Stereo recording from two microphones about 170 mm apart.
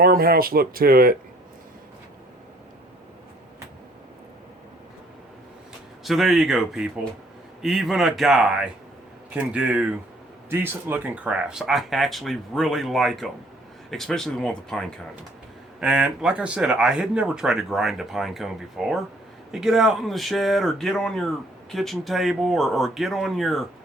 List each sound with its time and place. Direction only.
0.0 s speech: 65° right (ahead or behind)
6.1 s speech: centre (ahead or behind)